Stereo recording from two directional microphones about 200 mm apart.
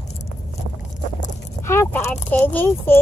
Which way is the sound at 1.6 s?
15° left (ahead or behind).